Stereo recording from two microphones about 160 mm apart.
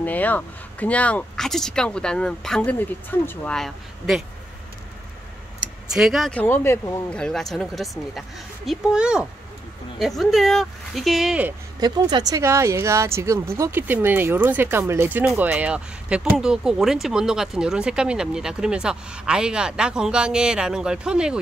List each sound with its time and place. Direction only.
0.0 s speech: 10° left (ahead or behind)
5.9 s speech: centre (ahead or behind)
6.4 s speech: 15° left (ahead or behind)
7.1 s speech: 5° left (ahead or behind)
11.8 s speech: 25° right (ahead or behind); by 21.4 s 5° right (ahead or behind)